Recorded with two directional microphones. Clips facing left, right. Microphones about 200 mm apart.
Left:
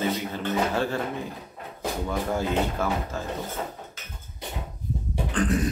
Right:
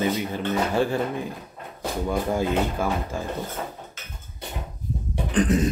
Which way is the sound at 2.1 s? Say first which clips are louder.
Right 4 dB; 15° right (ahead or behind).